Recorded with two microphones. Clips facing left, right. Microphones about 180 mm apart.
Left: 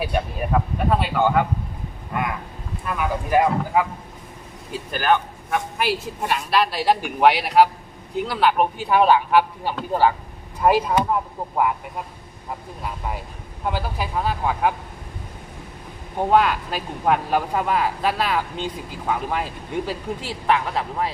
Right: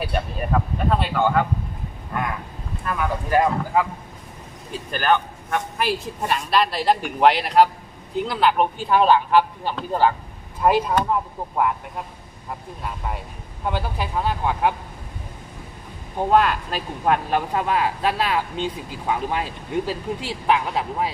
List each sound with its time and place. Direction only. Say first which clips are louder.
0.0 s speech: left 1 dB; 5° left (ahead or behind)
2.8 s speech: even; 5° left (ahead or behind)
4.9 s speech: even; 10° left (ahead or behind)
13.7 s speech: even; 5° left (ahead or behind)
16.1 s speech: even; 5° left (ahead or behind)